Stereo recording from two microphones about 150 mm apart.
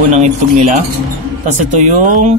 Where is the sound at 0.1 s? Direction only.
55° right (ahead or behind).